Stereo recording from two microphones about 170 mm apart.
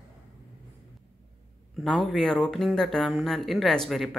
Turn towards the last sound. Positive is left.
turn(degrees=0)  # may be behind; listen again after turning